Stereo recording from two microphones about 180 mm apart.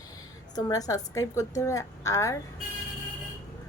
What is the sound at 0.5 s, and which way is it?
A woman's voice, 20° left (ahead or behind).